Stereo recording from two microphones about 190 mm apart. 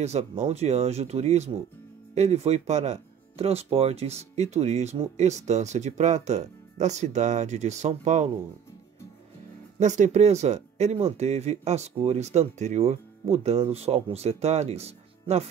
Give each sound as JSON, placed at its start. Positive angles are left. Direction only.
{"t": 0.0, "sound": "speech", "side_deg": -35}
{"t": 9.8, "sound": "speech", "side_deg": -40}